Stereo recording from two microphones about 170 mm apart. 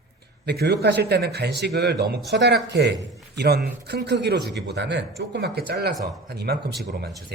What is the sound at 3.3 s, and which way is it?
A man's voice, 70° right (ahead or behind).